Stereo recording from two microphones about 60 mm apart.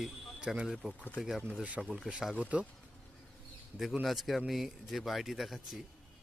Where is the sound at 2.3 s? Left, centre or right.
Right.